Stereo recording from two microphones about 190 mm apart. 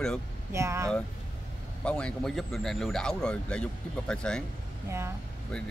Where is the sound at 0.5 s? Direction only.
15° right (ahead or behind).